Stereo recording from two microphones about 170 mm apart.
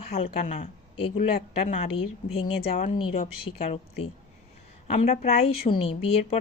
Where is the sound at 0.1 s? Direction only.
40° left (ahead or behind).